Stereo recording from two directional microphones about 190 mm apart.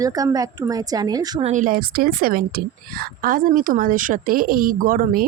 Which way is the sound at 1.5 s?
45° right (ahead or behind).